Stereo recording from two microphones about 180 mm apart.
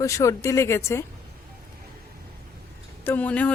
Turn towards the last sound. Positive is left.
turn(degrees=10)  # may be behind; listen again after turning